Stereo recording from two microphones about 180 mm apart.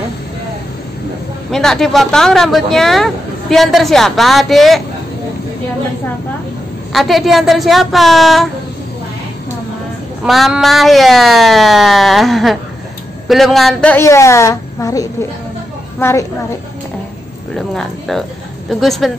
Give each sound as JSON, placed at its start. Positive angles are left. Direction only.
{"t": 1.5, "sound": "speech", "side_deg": 0}
{"t": 6.9, "sound": "speech", "side_deg": 0}
{"t": 10.2, "sound": "a woman's voice", "side_deg": 0}
{"t": 17.6, "sound": "speech", "side_deg": 0}